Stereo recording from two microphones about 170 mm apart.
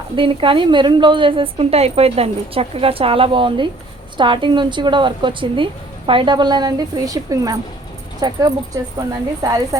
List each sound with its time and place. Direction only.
0.2 s a woman's voice: 30° right (ahead or behind)